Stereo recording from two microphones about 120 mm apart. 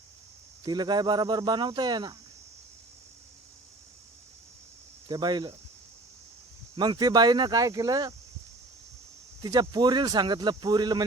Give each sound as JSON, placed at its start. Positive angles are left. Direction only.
{"t": 0.6, "sound": "speech", "side_deg": -35}
{"t": 5.0, "sound": "speech", "side_deg": -35}
{"t": 6.7, "sound": "speech", "side_deg": -35}
{"t": 9.4, "sound": "speech", "side_deg": -35}